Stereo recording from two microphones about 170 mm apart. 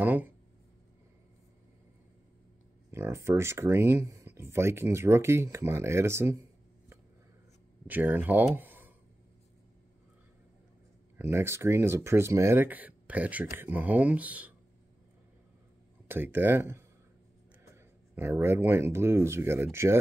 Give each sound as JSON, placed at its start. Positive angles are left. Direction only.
{"t": 0.0, "sound": "a sound", "side_deg": -10}
{"t": 2.9, "sound": "speech", "side_deg": -15}
{"t": 7.8, "sound": "speech", "side_deg": -10}
{"t": 11.1, "sound": "speech", "side_deg": -15}
{"t": 16.1, "sound": "speech", "side_deg": -10}
{"t": 18.1, "sound": "speech", "side_deg": -15}